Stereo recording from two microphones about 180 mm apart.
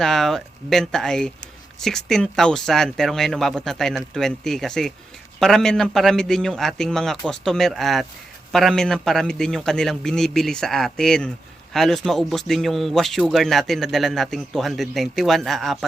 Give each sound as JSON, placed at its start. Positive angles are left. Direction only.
{"t": 0.0, "sound": "a man's voice", "side_deg": 0}